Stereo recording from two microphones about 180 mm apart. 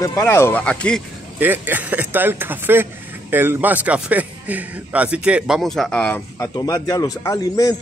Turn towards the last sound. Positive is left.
turn(degrees=20)  # may be behind; listen again after turning